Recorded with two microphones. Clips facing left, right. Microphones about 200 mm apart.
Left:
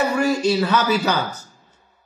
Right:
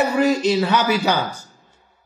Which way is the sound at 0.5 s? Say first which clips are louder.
Right 1 dB; 15° right (ahead or behind).